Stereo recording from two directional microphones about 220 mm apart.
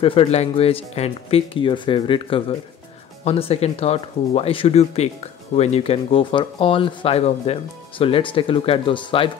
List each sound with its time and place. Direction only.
0.0 s speech: 25° left (ahead or behind)